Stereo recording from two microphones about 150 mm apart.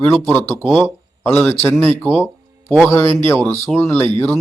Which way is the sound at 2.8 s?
15° left (ahead or behind).